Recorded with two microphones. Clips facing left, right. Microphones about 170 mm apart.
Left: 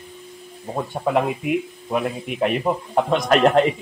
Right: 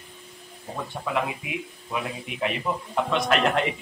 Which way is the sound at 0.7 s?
45° left (ahead or behind).